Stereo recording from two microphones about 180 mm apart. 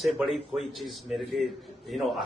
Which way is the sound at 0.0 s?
Centre (ahead or behind).